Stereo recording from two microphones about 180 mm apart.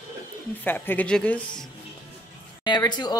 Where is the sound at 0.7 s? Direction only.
10° left (ahead or behind).